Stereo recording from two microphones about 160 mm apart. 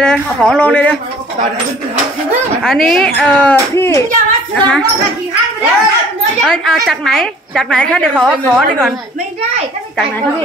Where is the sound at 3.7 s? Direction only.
20° left (ahead or behind).